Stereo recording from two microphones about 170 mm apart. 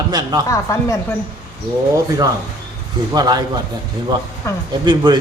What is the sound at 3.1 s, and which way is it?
Speech, 25° right (ahead or behind).